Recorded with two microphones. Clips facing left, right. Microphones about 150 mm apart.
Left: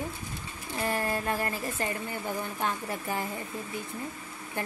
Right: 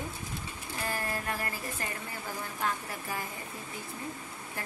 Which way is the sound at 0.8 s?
25° left (ahead or behind).